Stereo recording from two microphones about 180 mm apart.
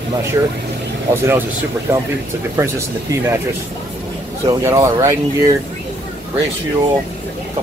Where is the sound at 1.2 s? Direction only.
15° right (ahead or behind).